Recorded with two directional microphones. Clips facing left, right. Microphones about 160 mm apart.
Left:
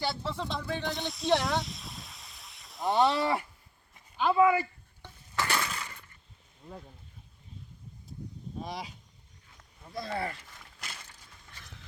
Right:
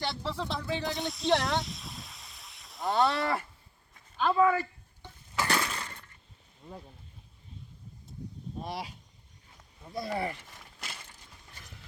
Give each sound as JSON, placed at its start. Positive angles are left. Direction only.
{"t": 0.0, "sound": "speech", "side_deg": 0}
{"t": 2.9, "sound": "livestock", "side_deg": 20}
{"t": 3.9, "sound": "speech", "side_deg": 10}
{"t": 5.3, "sound": "a sound", "side_deg": -10}
{"t": 8.6, "sound": "speech", "side_deg": -5}
{"t": 9.9, "sound": "speech", "side_deg": -15}